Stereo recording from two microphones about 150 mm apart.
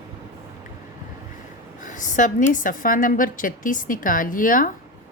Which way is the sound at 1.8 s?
55° left (ahead or behind).